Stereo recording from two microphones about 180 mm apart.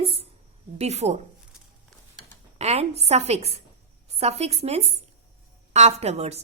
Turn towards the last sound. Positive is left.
turn(degrees=-35)  # may be behind; listen again after turning